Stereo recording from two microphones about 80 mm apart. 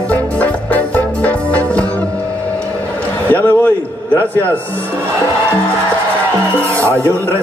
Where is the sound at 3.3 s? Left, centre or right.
Left.